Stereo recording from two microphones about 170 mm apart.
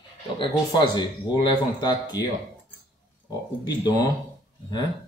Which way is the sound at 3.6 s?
25° left (ahead or behind).